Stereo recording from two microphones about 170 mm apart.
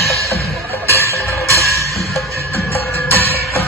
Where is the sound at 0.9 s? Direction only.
15° left (ahead or behind).